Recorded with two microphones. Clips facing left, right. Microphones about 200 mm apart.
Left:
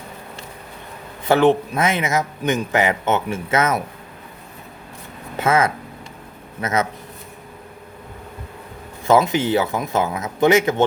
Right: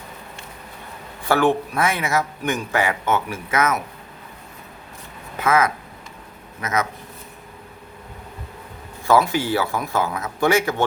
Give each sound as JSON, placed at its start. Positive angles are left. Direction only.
{"t": 1.2, "sound": "a man's voice", "side_deg": 20}
{"t": 5.4, "sound": "a man's voice", "side_deg": 25}
{"t": 9.0, "sound": "a man's voice", "side_deg": 20}